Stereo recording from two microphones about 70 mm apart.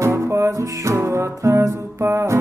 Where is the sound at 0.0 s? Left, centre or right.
Right.